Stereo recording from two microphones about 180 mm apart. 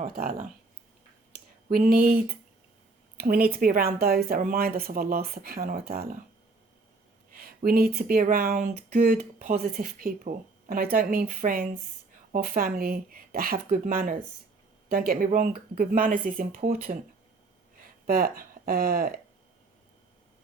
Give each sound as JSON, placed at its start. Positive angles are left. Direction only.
{"t": 0.0, "sound": "speech", "side_deg": -55}
{"t": 1.7, "sound": "a woman's voice", "side_deg": -55}
{"t": 7.3, "sound": "speech", "side_deg": -55}
{"t": 18.0, "sound": "speech", "side_deg": -55}